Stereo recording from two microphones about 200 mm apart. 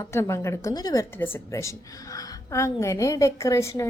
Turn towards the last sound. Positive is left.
turn(degrees=15)  # may be behind; listen again after turning